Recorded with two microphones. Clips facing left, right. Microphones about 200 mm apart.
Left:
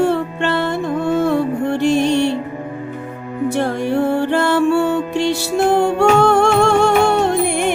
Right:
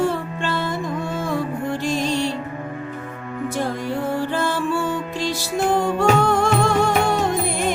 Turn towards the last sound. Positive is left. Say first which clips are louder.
# left 5 dB
turn(degrees=65)  # may be behind; listen again after turning